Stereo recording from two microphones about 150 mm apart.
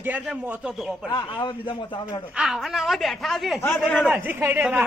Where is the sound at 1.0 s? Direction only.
30° left (ahead or behind).